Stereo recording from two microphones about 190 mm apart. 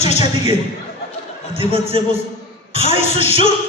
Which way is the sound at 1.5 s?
30° right (ahead or behind).